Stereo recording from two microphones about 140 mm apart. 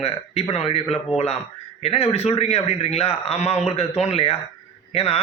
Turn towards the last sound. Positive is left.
turn(degrees=45)  # may be behind; listen again after turning